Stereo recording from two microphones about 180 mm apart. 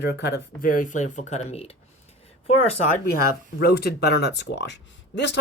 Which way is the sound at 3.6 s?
60° left (ahead or behind).